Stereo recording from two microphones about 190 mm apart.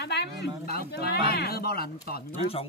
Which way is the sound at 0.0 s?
65° left (ahead or behind).